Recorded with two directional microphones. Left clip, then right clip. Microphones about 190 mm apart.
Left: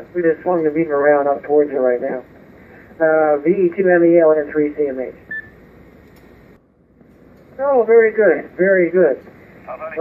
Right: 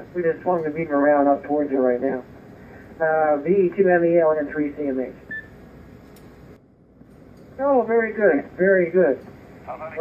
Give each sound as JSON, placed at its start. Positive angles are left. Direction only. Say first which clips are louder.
{"t": 0.1, "sound": "speech", "louder": "left 5 dB", "side_deg": 35}
{"t": 7.5, "sound": "speech", "louder": "left 7 dB", "side_deg": 40}
{"t": 9.7, "sound": "a sound", "louder": "left 4 dB", "side_deg": 50}